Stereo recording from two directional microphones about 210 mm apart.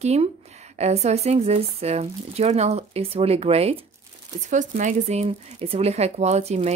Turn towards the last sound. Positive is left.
turn(degrees=-30)  # may be behind; listen again after turning